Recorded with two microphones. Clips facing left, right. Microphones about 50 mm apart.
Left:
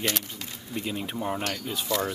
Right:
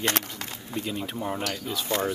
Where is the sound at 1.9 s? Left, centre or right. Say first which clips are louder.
Even; right.